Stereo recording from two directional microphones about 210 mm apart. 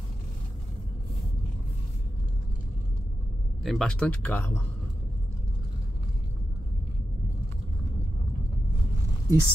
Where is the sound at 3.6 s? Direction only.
Centre (ahead or behind).